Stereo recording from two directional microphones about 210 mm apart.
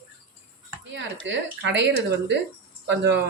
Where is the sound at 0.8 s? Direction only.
60° right (ahead or behind).